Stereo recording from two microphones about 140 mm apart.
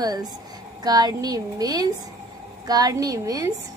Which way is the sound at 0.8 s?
30° right (ahead or behind).